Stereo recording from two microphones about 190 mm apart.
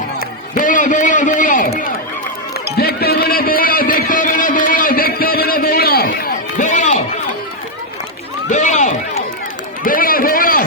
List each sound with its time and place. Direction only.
0.5 s a sound: 45° left (ahead or behind)
2.7 s music: 55° left (ahead or behind)
8.4 s run: 40° left (ahead or behind)